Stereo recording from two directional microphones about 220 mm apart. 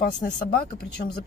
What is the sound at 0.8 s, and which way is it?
Speech, 45° left (ahead or behind).